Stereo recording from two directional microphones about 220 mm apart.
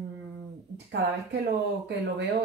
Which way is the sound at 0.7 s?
50° right (ahead or behind).